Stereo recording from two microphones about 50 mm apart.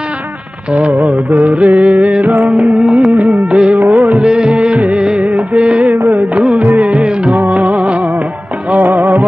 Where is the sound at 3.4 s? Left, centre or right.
Right.